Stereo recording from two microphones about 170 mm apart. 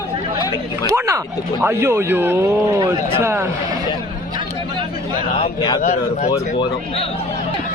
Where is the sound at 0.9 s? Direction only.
15° right (ahead or behind).